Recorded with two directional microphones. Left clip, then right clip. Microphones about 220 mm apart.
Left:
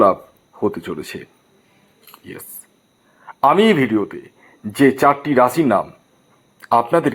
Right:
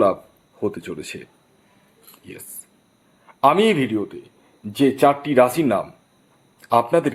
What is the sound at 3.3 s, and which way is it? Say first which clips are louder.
Speech: left 2 dB; 5° left (ahead or behind).